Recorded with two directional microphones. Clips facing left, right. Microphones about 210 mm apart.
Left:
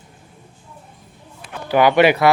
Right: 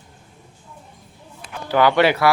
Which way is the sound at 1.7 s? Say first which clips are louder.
Left 3 dB; 15° left (ahead or behind).